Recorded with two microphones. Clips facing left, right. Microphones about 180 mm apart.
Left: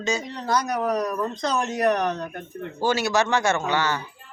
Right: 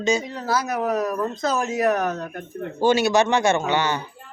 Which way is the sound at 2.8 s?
20° right (ahead or behind).